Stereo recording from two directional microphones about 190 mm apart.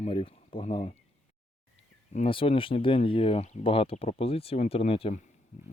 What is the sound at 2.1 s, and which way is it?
Speech, 35° left (ahead or behind).